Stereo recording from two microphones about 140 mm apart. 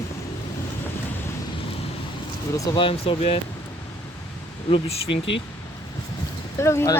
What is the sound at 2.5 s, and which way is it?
Speech, 25° left (ahead or behind).